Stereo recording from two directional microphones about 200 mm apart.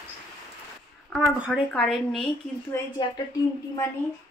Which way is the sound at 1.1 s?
Centre (ahead or behind).